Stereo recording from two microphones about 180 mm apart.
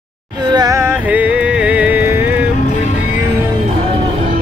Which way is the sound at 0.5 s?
20° right (ahead or behind).